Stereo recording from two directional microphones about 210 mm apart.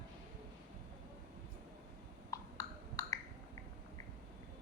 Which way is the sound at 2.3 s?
15° left (ahead or behind).